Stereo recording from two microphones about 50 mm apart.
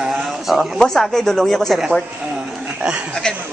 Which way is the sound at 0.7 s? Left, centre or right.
Centre.